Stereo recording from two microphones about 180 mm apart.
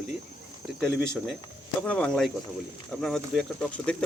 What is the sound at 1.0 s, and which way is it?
Speech, 5° right (ahead or behind).